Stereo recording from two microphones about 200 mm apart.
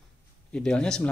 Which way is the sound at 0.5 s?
5° left (ahead or behind).